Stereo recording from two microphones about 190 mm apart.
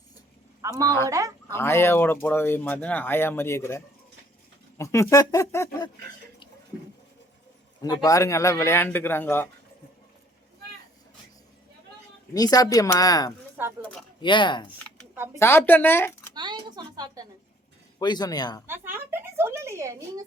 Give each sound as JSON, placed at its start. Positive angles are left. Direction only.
{"t": 0.6, "sound": "a woman's voice", "side_deg": -15}
{"t": 1.5, "sound": "speech", "side_deg": 15}
{"t": 7.8, "sound": "speech", "side_deg": 20}
{"t": 12.3, "sound": "speech", "side_deg": 20}
{"t": 13.6, "sound": "a woman's voice", "side_deg": -10}
{"t": 14.2, "sound": "speech", "side_deg": 25}
{"t": 15.4, "sound": "speech", "side_deg": 10}
{"t": 16.3, "sound": "speech", "side_deg": -20}
{"t": 18.0, "sound": "speech", "side_deg": 20}
{"t": 18.7, "sound": "a woman's voice", "side_deg": -10}